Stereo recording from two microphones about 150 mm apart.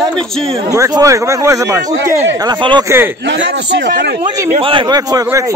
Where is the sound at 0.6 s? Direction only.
20° right (ahead or behind).